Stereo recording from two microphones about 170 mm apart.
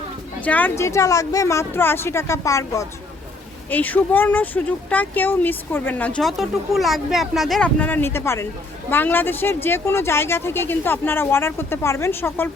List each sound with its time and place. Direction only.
0.4 s speech: 10° left (ahead or behind)